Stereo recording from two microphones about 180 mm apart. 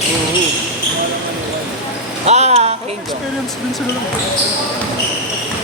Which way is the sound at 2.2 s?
40° right (ahead or behind).